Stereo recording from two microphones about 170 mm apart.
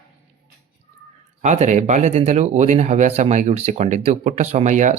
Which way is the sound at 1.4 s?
45° right (ahead or behind).